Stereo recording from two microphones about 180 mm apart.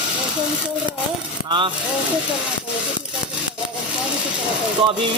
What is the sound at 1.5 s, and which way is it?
Speech, 25° right (ahead or behind).